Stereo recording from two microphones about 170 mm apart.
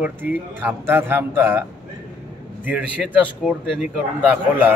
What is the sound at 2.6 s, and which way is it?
A man's voice, 10° right (ahead or behind).